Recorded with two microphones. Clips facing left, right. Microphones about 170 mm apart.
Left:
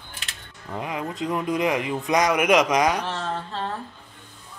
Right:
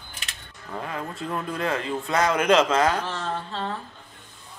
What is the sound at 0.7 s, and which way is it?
Speech, 15° left (ahead or behind).